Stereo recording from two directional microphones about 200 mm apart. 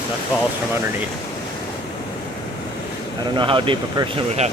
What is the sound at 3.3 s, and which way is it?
Speech, 25° right (ahead or behind).